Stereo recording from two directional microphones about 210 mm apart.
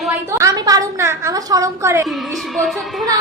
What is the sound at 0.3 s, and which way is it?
A woman's voice, 15° right (ahead or behind).